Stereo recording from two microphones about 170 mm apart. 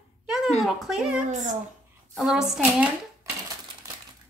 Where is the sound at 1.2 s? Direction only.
45° right (ahead or behind).